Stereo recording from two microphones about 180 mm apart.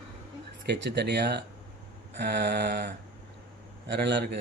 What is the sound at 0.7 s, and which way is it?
A man's voice, 70° right (ahead or behind).